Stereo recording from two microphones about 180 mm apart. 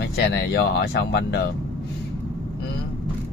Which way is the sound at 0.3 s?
70° left (ahead or behind).